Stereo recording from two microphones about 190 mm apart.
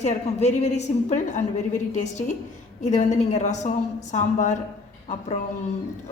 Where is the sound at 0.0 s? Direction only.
35° left (ahead or behind).